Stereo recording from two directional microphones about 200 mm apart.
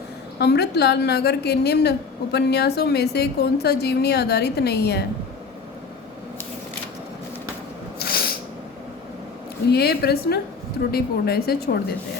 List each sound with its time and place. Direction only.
0.3 s a woman's voice: 55° left (ahead or behind)
7.9 s sneeze: 50° left (ahead or behind)
9.6 s a woman's voice: 55° left (ahead or behind)